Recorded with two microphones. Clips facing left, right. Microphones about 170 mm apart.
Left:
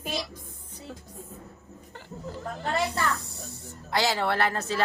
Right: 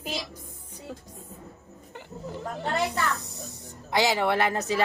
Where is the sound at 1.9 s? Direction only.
20° right (ahead or behind).